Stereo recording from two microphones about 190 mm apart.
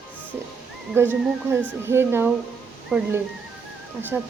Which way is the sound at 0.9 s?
10° right (ahead or behind).